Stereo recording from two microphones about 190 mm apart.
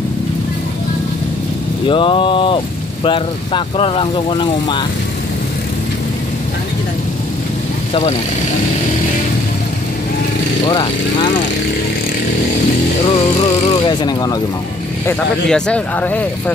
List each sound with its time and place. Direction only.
1.9 s speech: 25° left (ahead or behind)
10.7 s speech: 25° left (ahead or behind)
13.7 s speech: 25° left (ahead or behind)
15.0 s speech: 5° left (ahead or behind)